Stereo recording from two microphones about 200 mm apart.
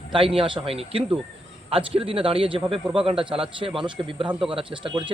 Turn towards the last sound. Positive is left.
turn(degrees=-25)  # may be behind; listen again after turning